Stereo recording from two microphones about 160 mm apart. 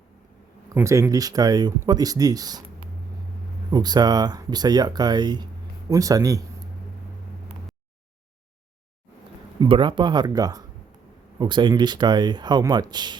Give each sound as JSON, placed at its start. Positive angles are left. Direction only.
{"t": 0.7, "sound": "speech", "side_deg": -15}
{"t": 3.7, "sound": "speech", "side_deg": -25}
{"t": 9.6, "sound": "speech", "side_deg": -30}